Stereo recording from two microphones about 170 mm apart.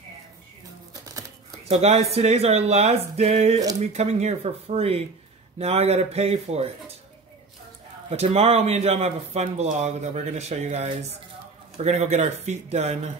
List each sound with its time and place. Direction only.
1.7 s speech: 40° right (ahead or behind)
8.1 s speech: 40° right (ahead or behind)